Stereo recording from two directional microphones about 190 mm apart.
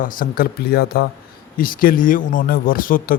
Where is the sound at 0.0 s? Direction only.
50° left (ahead or behind).